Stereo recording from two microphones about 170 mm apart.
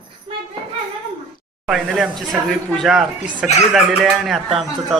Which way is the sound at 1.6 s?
Centre (ahead or behind).